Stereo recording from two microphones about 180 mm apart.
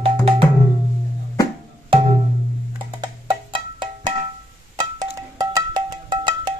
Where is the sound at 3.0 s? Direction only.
25° right (ahead or behind).